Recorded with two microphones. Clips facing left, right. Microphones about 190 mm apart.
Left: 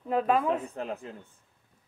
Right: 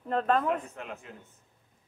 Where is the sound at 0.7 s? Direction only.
35° left (ahead or behind).